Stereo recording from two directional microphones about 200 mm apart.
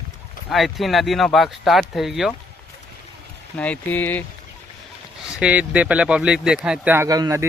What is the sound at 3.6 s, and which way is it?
Speech, 10° left (ahead or behind).